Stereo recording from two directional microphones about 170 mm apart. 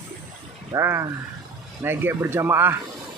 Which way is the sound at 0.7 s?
15° right (ahead or behind).